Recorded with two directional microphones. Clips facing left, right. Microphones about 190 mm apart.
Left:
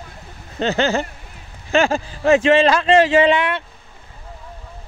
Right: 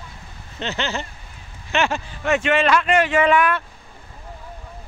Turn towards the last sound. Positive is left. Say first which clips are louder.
# left 2 dB
turn(degrees=25)  # may be behind; listen again after turning